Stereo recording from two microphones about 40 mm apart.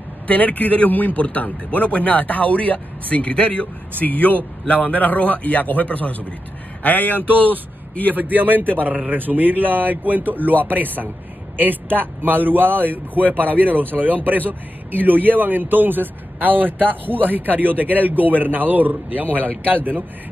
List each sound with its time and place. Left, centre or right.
0.3 s a man's voice: left
8.2 s a man's voice: right